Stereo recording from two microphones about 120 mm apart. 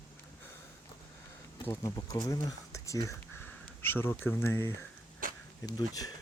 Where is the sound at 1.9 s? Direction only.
30° left (ahead or behind).